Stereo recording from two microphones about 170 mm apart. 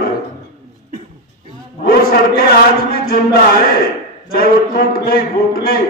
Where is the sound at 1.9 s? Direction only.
60° left (ahead or behind).